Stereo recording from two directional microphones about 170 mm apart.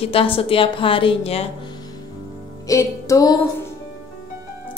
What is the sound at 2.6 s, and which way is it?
Speech, 20° left (ahead or behind).